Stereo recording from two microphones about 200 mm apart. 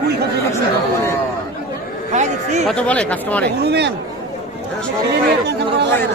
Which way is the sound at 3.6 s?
55° right (ahead or behind).